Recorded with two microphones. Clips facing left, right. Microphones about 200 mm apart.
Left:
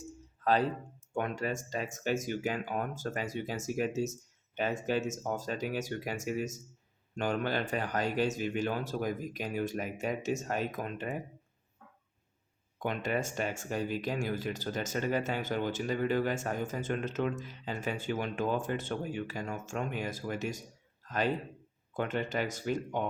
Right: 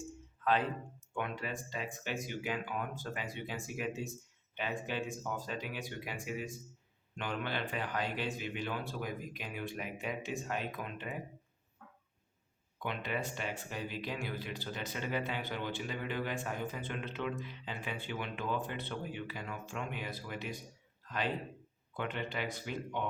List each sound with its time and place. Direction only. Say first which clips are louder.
0.4 s speech: left 4 dB; 40° left (ahead or behind)
12.8 s speech: left 5 dB; 45° left (ahead or behind)
21.0 s a sound: left 5 dB; 45° left (ahead or behind)
21.9 s speech: left 6 dB; 45° left (ahead or behind)